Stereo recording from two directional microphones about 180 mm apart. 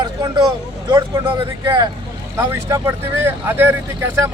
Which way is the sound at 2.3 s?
15° right (ahead or behind).